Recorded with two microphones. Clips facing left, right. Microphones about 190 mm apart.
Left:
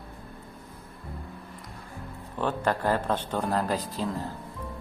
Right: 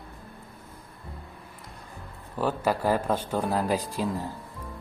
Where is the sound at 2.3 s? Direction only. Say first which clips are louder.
Right 1 dB; 10° right (ahead or behind).